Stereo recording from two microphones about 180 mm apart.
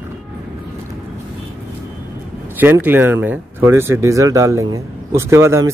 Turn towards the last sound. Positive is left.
turn(degrees=-15)  # may be behind; listen again after turning